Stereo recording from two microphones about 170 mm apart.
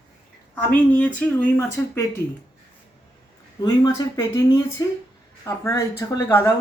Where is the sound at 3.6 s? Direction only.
20° left (ahead or behind).